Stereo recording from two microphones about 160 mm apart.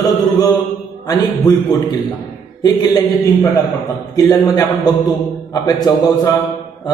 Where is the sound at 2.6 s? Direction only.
25° left (ahead or behind).